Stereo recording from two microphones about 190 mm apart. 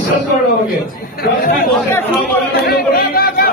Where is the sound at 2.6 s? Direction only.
55° left (ahead or behind).